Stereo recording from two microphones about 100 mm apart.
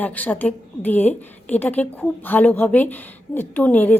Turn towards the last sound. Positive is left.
turn(degrees=15)  # may be behind; listen again after turning